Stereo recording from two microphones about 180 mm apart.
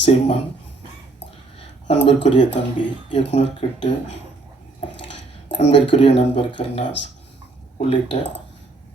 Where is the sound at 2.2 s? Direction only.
40° left (ahead or behind).